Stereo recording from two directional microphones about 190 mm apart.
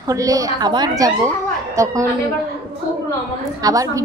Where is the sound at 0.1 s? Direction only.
15° right (ahead or behind).